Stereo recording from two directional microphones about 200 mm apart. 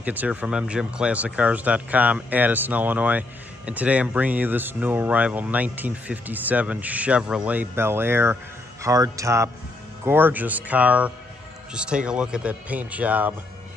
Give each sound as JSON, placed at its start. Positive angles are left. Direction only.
{"t": 0.0, "sound": "speech", "side_deg": -10}